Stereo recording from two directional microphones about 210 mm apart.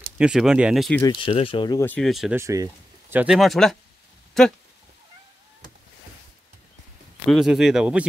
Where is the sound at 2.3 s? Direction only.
15° right (ahead or behind); by 4.5 s centre (ahead or behind).